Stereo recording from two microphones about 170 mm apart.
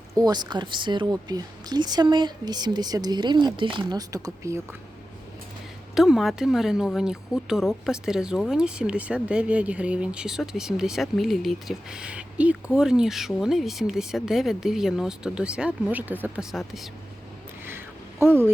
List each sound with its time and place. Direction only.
0.1 s speech: 20° right (ahead or behind)
5.9 s speech: centre (ahead or behind)